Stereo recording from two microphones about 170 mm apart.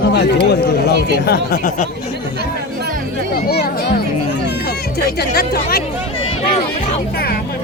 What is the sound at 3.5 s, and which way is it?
Music, 70° left (ahead or behind).